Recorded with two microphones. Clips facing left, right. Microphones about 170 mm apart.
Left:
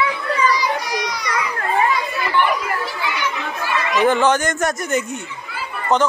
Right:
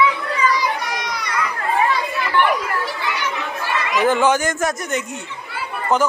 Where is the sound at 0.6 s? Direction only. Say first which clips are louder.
Left 1 dB; 55° right (ahead or behind).